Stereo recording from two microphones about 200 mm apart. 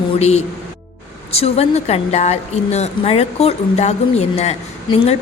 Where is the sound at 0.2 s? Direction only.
30° left (ahead or behind).